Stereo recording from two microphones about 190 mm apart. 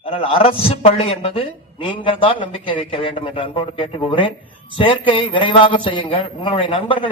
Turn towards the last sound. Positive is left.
turn(degrees=25)  # may be behind; listen again after turning